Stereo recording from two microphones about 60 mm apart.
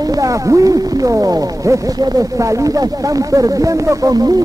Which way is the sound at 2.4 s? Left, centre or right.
Right.